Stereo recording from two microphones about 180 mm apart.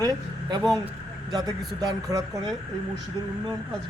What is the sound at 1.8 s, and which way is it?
Speech, 20° right (ahead or behind).